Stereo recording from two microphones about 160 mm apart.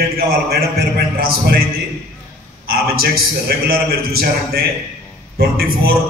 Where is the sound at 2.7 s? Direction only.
70° right (ahead or behind).